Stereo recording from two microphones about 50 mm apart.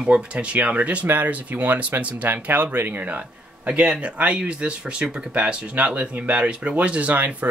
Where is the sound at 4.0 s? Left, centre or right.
Right.